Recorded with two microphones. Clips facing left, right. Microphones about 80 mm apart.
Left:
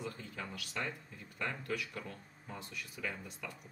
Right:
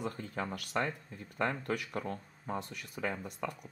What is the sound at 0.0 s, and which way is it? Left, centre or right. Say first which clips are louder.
Speech: right 6 dB; right.